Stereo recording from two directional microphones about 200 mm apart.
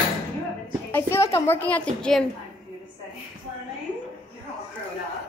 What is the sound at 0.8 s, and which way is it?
A woman's voice, 10° left (ahead or behind).